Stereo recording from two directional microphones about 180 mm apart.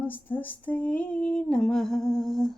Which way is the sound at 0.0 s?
10° left (ahead or behind).